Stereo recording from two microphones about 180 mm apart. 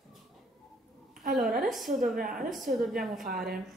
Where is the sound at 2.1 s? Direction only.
50° right (ahead or behind).